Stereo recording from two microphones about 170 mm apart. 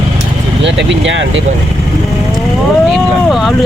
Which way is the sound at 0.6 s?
90° right.